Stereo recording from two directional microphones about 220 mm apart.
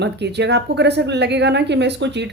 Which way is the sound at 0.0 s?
50° right (ahead or behind).